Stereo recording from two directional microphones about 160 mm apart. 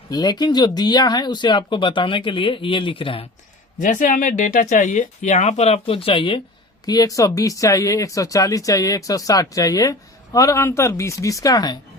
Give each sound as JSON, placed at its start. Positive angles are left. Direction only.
{"t": 0.1, "sound": "speech", "side_deg": 25}
{"t": 3.8, "sound": "speech", "side_deg": 55}
{"t": 6.8, "sound": "speech", "side_deg": 25}